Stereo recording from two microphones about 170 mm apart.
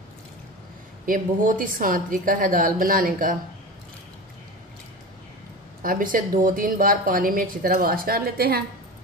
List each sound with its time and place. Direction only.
1.0 s a woman's voice: 50° right (ahead or behind)
5.8 s a woman's voice: 55° right (ahead or behind)